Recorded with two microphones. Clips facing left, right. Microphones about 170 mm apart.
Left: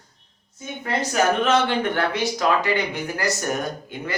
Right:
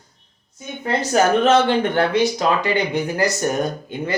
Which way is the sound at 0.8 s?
30° right (ahead or behind).